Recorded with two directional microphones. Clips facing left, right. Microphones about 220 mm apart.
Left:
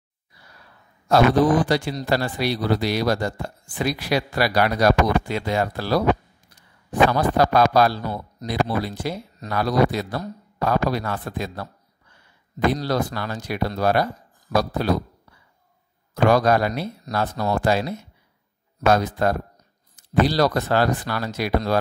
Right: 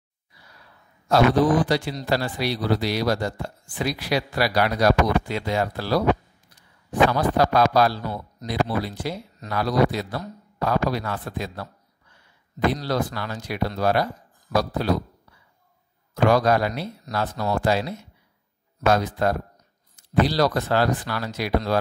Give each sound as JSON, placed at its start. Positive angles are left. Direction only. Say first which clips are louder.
{"t": 1.7, "sound": "a man's voice", "louder": "left 2 dB", "side_deg": 50}
{"t": 7.1, "sound": "a man's voice", "louder": "left 1 dB", "side_deg": 45}
{"t": 16.3, "sound": "a man's voice", "louder": "left 1 dB", "side_deg": 45}